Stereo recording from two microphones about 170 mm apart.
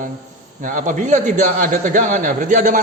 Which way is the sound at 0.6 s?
50° right (ahead or behind).